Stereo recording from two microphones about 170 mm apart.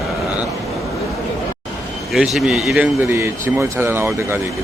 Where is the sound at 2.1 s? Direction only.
Centre (ahead or behind).